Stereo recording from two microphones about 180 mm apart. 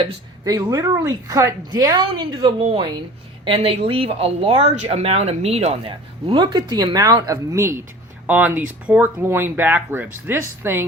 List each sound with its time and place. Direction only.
0.4 s a woman's voice: 20° right (ahead or behind)